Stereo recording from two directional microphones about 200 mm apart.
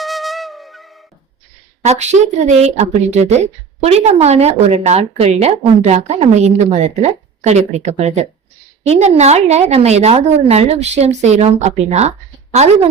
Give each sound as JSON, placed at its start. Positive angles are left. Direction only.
{"t": 0.0, "sound": "music", "side_deg": 0}
{"t": 1.8, "sound": "a woman's voice", "side_deg": -35}